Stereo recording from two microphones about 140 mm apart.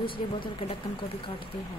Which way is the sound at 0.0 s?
35° left (ahead or behind).